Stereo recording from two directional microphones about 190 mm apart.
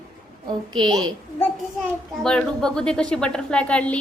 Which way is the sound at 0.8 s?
25° right (ahead or behind).